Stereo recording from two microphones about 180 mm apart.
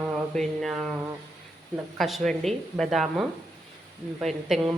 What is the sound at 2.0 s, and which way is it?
Speech, centre (ahead or behind).